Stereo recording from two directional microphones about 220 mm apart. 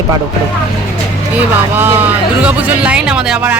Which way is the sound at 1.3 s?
10° right (ahead or behind).